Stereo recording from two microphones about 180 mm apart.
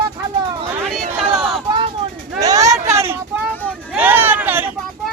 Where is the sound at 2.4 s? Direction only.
20° right (ahead or behind).